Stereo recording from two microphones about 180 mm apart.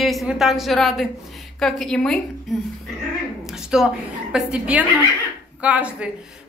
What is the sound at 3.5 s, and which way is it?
A woman's voice, 5° right (ahead or behind).